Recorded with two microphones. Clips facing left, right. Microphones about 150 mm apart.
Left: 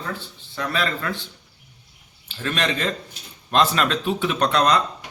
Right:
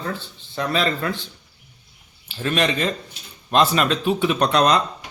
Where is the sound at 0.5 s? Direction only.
25° right (ahead or behind).